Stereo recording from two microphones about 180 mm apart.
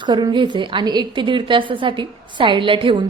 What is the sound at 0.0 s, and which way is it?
A woman's voice, 25° right (ahead or behind).